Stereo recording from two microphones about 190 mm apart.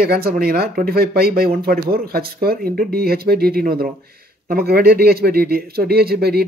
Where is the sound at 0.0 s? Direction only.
50° right (ahead or behind).